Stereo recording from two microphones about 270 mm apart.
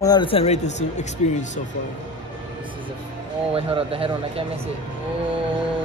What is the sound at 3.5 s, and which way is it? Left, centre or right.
Speech, centre.